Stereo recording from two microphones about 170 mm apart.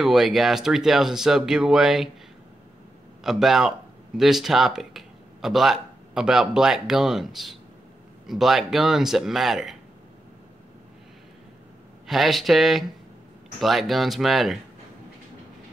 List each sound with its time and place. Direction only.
0.0 s speech: centre (ahead or behind)
3.3 s speech: centre (ahead or behind)
12.1 s speech: centre (ahead or behind)